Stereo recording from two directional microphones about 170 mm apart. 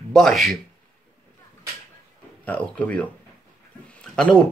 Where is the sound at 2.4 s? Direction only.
10° left (ahead or behind).